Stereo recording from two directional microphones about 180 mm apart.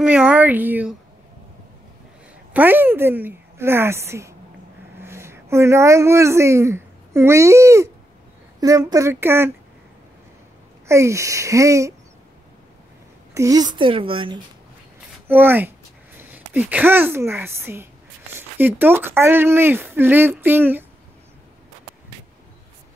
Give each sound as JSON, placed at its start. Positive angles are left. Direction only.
{"t": 0.0, "sound": "a woman's voice", "side_deg": -5}
{"t": 2.5, "sound": "speech", "side_deg": -10}
{"t": 10.9, "sound": "speech", "side_deg": -15}
{"t": 13.3, "sound": "a woman's voice", "side_deg": -20}
{"t": 15.2, "sound": "speech", "side_deg": -10}